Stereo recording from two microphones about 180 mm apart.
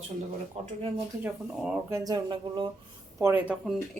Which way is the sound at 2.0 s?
25° right (ahead or behind).